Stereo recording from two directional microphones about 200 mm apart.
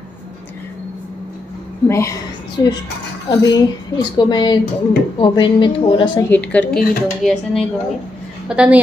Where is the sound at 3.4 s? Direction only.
20° left (ahead or behind).